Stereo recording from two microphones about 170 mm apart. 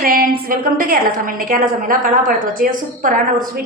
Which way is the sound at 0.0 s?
60° right (ahead or behind).